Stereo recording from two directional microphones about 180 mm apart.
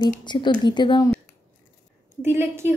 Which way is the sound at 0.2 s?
25° left (ahead or behind).